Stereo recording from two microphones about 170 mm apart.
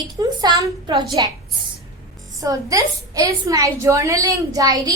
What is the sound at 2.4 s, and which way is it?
A woman's voice, 20° right (ahead or behind).